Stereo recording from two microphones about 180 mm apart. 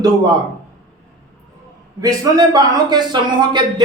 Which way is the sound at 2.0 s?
20° right (ahead or behind).